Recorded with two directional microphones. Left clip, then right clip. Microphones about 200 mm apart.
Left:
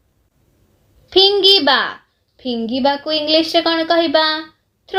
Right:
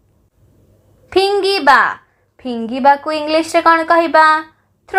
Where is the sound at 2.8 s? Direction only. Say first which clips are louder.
Right 5 dB; 10° right (ahead or behind).